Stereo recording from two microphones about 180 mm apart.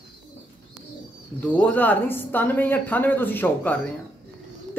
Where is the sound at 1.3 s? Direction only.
10° left (ahead or behind).